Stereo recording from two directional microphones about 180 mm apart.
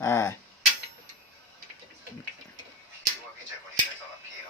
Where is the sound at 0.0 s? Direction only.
15° left (ahead or behind).